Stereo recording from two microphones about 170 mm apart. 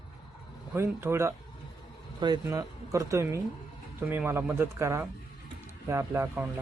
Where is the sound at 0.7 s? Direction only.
15° right (ahead or behind).